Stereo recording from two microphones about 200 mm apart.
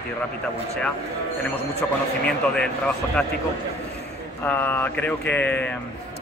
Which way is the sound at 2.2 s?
5° left (ahead or behind).